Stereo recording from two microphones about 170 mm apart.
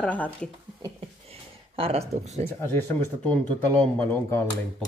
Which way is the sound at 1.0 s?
35° right (ahead or behind).